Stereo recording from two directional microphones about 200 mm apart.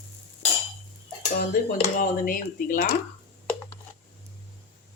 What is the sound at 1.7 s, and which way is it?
Speech, 40° left (ahead or behind).